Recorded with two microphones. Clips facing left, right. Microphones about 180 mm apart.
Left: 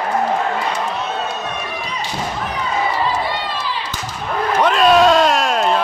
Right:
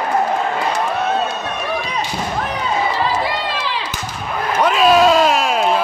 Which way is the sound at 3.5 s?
90° right.